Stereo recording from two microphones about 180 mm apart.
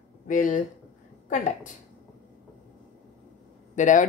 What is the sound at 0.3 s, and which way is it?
A woman's voice, 45° left (ahead or behind).